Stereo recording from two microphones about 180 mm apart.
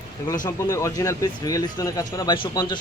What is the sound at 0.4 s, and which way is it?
A man's voice, 20° left (ahead or behind).